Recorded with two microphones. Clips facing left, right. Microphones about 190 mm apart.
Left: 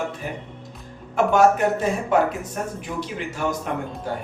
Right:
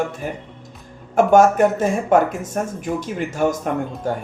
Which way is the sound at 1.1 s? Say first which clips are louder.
Right 4 dB; 45° right (ahead or behind).